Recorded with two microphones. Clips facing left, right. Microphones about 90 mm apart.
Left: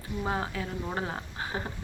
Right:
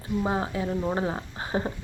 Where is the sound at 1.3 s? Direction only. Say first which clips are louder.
Right 6 dB; 30° right (ahead or behind).